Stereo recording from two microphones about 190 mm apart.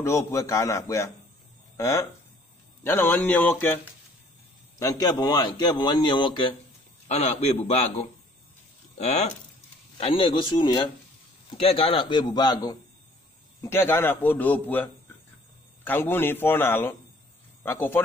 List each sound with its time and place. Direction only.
0.0 s a man's voice: 15° left (ahead or behind); by 7.9 s 35° left (ahead or behind)
8.9 s a man's voice: 35° left (ahead or behind); by 18.0 s 10° left (ahead or behind)